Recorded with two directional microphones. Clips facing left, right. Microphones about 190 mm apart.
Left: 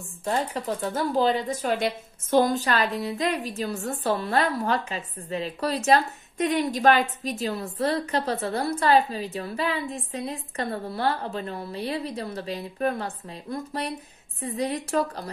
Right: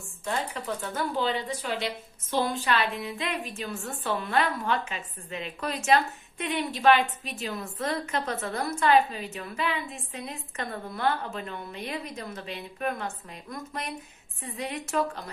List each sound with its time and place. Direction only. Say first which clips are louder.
0.2 s a woman's voice: left 5 dB; 35° left (ahead or behind)